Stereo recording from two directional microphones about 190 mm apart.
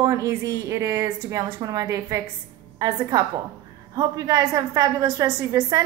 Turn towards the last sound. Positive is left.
turn(degrees=-20)  # may be behind; listen again after turning